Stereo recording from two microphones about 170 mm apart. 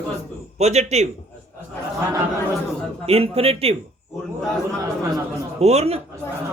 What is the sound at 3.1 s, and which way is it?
Speech, 35° right (ahead or behind).